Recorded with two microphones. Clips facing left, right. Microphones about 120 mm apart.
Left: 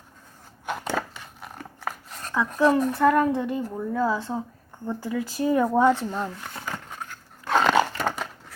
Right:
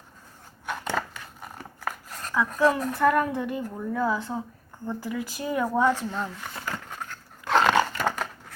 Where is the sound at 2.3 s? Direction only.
25° left (ahead or behind).